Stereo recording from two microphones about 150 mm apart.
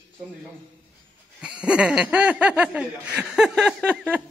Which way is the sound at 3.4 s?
5° right (ahead or behind).